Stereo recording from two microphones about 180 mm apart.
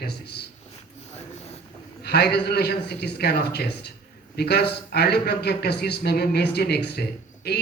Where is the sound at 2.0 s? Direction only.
65° left (ahead or behind).